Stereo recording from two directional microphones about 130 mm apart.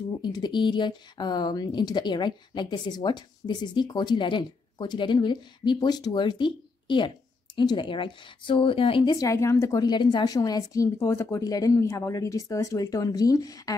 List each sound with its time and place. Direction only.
0.2 s speech: 35° left (ahead or behind)
9.1 s a woman's voice: 25° left (ahead or behind)